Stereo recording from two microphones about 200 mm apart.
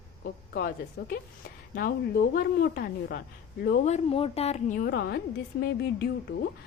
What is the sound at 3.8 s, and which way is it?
A woman's voice, 30° left (ahead or behind).